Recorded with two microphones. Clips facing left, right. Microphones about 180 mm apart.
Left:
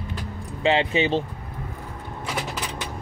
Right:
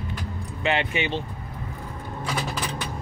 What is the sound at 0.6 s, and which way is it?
Speech, 30° left (ahead or behind).